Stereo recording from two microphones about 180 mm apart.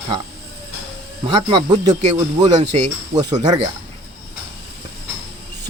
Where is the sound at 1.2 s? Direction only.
25° right (ahead or behind).